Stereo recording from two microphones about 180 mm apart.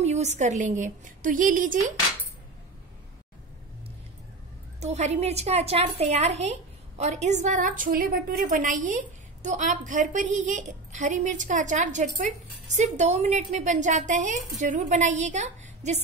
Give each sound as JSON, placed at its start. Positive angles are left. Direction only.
{"t": 0.0, "sound": "a woman's voice", "side_deg": -40}
{"t": 4.7, "sound": "a woman's voice", "side_deg": -40}